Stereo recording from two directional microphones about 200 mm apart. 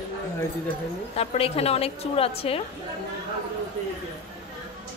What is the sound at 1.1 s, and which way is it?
A woman's voice, 30° left (ahead or behind).